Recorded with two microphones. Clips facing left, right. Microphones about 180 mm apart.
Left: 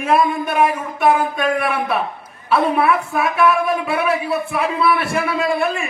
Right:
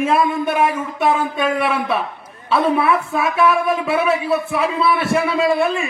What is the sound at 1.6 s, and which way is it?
Speech, 25° right (ahead or behind).